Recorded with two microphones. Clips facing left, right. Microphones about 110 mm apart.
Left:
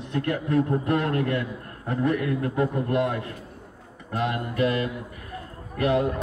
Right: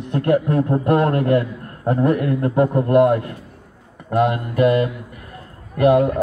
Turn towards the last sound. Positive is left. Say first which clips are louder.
# right 9 dB
turn(degrees=-50)  # may be behind; listen again after turning